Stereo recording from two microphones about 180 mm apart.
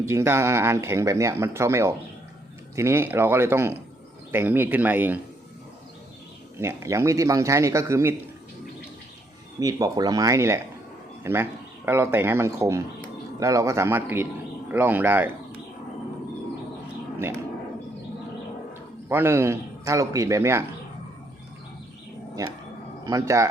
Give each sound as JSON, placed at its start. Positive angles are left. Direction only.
{"t": 0.0, "sound": "speech", "side_deg": -15}
{"t": 6.6, "sound": "speech", "side_deg": -15}
{"t": 9.6, "sound": "a man's voice", "side_deg": -20}
{"t": 19.0, "sound": "speech", "side_deg": -15}
{"t": 22.4, "sound": "speech", "side_deg": -15}